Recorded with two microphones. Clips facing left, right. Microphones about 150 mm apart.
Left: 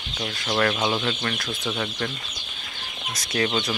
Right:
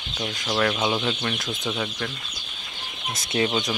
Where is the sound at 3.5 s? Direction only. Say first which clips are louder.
Even; 15° right (ahead or behind).